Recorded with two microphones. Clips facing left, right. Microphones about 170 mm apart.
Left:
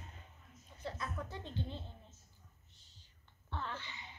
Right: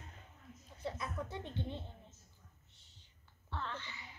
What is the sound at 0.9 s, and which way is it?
Speech, 25° right (ahead or behind).